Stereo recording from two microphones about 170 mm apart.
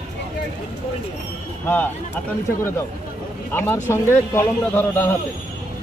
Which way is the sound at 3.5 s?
15° left (ahead or behind).